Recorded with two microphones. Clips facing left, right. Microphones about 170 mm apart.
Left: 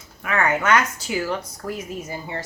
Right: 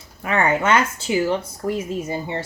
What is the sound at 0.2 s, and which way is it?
Speech, 30° right (ahead or behind).